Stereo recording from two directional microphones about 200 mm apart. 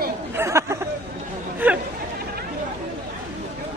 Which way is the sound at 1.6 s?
10° right (ahead or behind).